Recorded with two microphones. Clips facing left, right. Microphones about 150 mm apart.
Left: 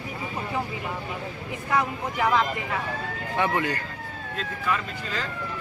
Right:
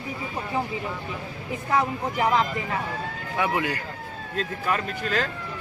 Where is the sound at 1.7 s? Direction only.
30° right (ahead or behind).